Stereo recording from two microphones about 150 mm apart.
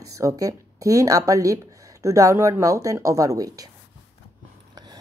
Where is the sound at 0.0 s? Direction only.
20° right (ahead or behind).